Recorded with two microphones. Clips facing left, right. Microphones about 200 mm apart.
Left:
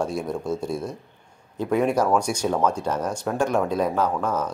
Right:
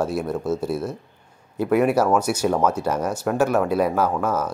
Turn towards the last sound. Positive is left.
turn(degrees=-5)  # may be behind; listen again after turning